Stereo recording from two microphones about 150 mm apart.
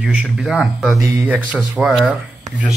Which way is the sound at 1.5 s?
Centre (ahead or behind).